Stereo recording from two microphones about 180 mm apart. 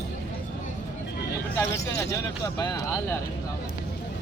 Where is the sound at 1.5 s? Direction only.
15° left (ahead or behind).